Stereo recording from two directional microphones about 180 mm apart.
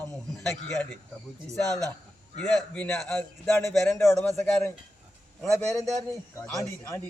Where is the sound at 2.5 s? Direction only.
5° left (ahead or behind).